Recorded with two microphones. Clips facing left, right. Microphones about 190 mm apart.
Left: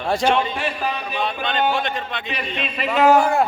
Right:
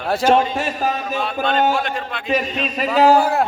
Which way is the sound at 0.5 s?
45° right (ahead or behind).